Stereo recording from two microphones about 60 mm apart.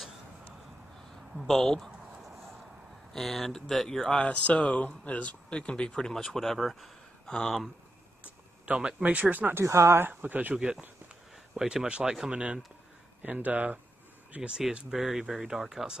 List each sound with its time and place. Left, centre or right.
1.5 s speech: centre
3.1 s speech: centre
4.1 s speech: left; by 7.7 s centre
8.6 s speech: centre
9.0 s speech: right
9.6 s speech: right
10.2 s speech: right
10.5 s speech: centre